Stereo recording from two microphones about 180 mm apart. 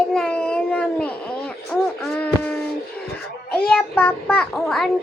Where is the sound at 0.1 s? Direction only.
5° left (ahead or behind).